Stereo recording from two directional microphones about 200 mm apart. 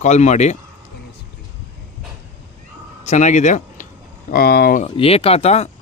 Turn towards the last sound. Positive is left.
turn(degrees=30)  # may be behind; listen again after turning